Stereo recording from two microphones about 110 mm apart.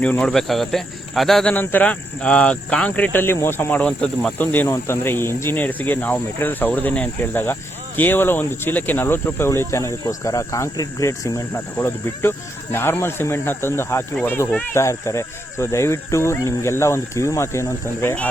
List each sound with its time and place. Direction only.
0.0 s speech: 10° left (ahead or behind)
1.5 s speech: 15° left (ahead or behind)
4.7 s speech: 20° left (ahead or behind)
11.5 s speech: 20° left (ahead or behind)